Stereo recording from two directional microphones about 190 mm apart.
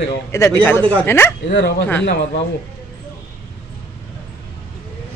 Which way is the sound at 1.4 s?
65° left (ahead or behind).